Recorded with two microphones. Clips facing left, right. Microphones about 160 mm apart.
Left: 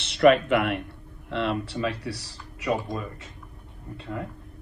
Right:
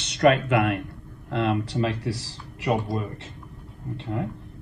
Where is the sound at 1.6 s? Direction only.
35° right (ahead or behind).